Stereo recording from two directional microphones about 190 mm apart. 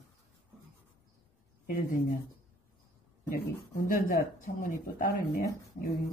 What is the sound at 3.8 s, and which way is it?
Speech, 50° left (ahead or behind).